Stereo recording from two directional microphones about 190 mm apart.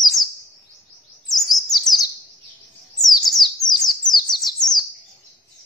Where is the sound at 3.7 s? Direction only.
20° left (ahead or behind).